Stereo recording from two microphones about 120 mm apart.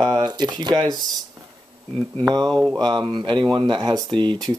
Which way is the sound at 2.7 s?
40° right (ahead or behind).